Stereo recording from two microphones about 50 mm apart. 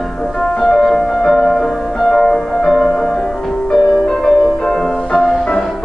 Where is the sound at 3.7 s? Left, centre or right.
Centre.